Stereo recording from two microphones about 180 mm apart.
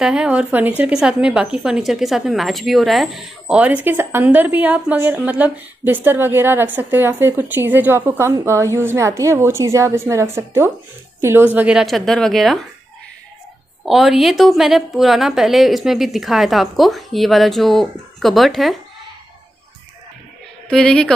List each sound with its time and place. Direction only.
0.0 s a woman's voice: 5° right (ahead or behind)
13.8 s a woman's voice: centre (ahead or behind)
20.6 s a woman's voice: 5° left (ahead or behind)